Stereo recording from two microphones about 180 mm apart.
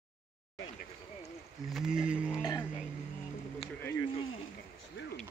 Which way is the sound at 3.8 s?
15° left (ahead or behind).